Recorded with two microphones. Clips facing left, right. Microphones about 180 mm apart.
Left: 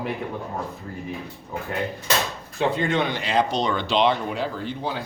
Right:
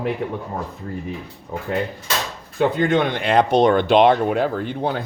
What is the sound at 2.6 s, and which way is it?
Speech, 50° right (ahead or behind).